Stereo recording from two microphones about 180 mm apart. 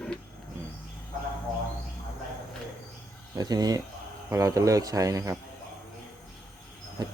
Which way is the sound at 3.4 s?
20° right (ahead or behind).